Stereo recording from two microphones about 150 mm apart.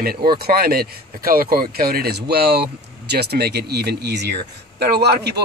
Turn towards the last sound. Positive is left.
turn(degrees=-90)